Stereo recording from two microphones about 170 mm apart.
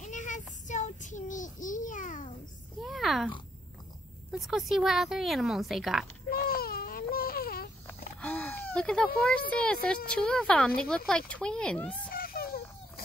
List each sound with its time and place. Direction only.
0.0 s child singing: 50° left (ahead or behind)
2.8 s oink: centre (ahead or behind)
4.3 s a woman's voice: centre (ahead or behind)
6.3 s baby cry: 60° left (ahead or behind)
8.2 s a woman's voice: 10° left (ahead or behind)
12.1 s a sound: 60° left (ahead or behind)